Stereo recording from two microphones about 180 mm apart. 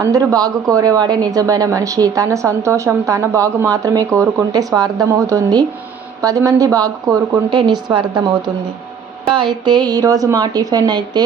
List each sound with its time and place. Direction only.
0.0 s a woman's voice: 20° right (ahead or behind)